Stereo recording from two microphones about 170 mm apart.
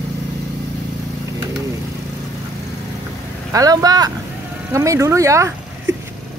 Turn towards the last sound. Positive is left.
turn(degrees=-15)  # may be behind; listen again after turning